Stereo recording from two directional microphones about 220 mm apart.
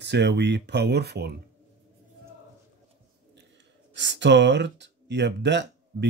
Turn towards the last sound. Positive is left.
turn(degrees=-50)  # may be behind; listen again after turning